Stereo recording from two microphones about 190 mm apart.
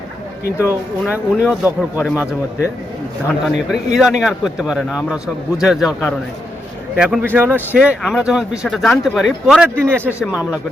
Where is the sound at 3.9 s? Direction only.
Centre (ahead or behind).